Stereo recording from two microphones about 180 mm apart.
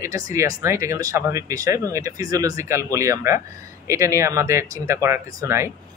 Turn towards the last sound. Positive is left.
turn(degrees=-15)  # may be behind; listen again after turning